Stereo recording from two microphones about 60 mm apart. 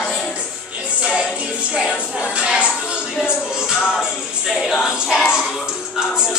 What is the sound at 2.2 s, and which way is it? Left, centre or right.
Music, centre.